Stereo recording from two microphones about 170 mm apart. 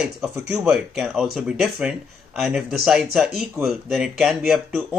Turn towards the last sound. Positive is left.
turn(degrees=0)  # may be behind; listen again after turning